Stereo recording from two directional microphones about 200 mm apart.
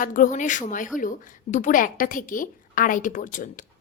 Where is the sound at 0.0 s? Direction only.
40° left (ahead or behind).